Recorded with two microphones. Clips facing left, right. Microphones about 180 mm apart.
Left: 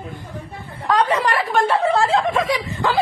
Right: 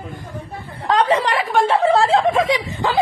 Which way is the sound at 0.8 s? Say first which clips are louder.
Right 2 dB; 25° right (ahead or behind).